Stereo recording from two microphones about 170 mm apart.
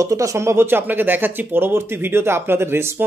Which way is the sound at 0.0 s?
20° right (ahead or behind).